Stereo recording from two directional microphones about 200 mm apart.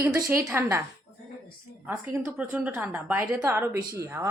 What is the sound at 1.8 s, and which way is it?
A woman's voice, 10° right (ahead or behind).